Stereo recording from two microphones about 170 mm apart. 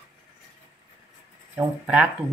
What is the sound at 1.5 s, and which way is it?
Speech, 10° right (ahead or behind).